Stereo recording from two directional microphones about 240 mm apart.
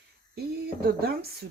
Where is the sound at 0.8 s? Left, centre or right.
Right.